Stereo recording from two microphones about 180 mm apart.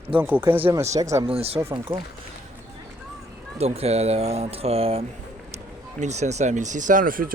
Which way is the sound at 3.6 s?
35° right (ahead or behind).